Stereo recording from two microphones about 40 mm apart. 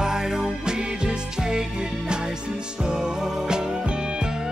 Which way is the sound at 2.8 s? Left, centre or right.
Centre.